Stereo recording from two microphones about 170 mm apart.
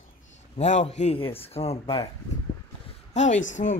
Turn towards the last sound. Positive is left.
turn(degrees=50)  # may be behind; listen again after turning